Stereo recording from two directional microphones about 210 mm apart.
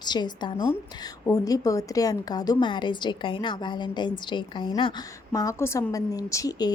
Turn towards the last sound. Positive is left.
turn(degrees=20)  # may be behind; listen again after turning